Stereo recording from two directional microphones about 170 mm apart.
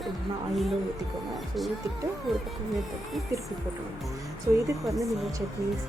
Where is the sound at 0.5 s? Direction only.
Centre (ahead or behind).